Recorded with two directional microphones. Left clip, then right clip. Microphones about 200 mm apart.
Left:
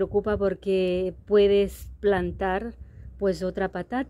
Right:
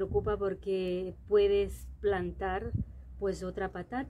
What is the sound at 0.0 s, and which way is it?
Speech, 45° left (ahead or behind).